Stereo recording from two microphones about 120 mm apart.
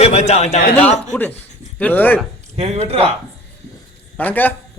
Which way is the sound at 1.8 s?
15° left (ahead or behind).